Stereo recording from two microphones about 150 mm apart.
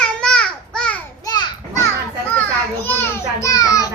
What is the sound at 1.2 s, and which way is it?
Children playing, 25° left (ahead or behind).